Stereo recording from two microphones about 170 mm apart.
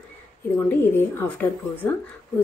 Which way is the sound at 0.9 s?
10° left (ahead or behind).